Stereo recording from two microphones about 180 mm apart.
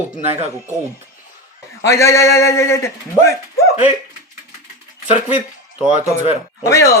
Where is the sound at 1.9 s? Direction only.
15° left (ahead or behind).